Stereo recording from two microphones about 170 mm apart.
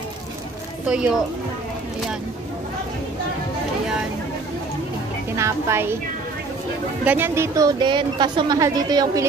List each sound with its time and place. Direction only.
0.8 s speech: 5° right (ahead or behind)
5.3 s a woman's voice: 15° right (ahead or behind)
7.1 s a woman's voice: 10° right (ahead or behind)